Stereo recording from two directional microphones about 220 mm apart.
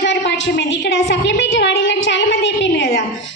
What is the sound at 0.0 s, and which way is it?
A woman's voice, 55° left (ahead or behind).